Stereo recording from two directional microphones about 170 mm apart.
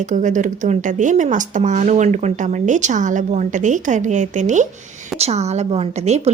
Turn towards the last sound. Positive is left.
turn(degrees=-35)  # may be behind; listen again after turning